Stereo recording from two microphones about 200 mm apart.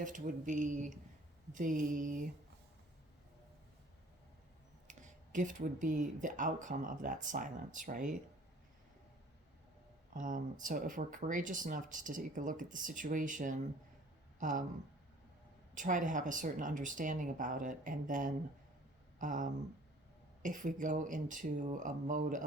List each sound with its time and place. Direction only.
0.0 s speech: 40° right (ahead or behind)
4.9 s speech: 40° right (ahead or behind)
10.2 s speech: 40° right (ahead or behind)
15.7 s speech: 40° right (ahead or behind)